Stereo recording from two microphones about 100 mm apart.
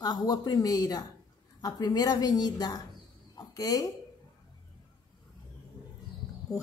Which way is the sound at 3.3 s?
40° left (ahead or behind).